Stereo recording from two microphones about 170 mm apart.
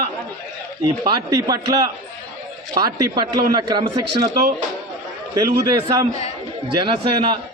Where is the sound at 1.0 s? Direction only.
20° right (ahead or behind).